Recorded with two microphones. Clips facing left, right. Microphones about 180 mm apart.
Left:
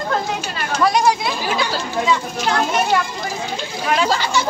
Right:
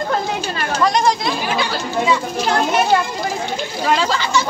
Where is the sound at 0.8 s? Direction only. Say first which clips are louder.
Left 1 dB; 10° left (ahead or behind).